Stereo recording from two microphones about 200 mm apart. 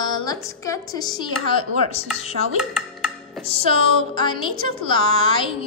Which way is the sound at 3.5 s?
30° left (ahead or behind).